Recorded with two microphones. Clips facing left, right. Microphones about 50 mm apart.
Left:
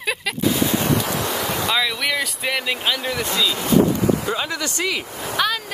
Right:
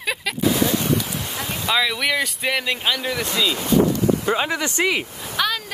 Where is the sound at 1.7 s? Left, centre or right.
Centre.